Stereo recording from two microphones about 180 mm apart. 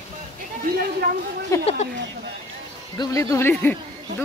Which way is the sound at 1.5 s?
15° left (ahead or behind).